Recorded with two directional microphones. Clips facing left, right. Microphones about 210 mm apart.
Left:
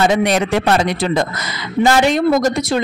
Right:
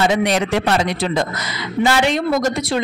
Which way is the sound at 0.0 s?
50° left (ahead or behind).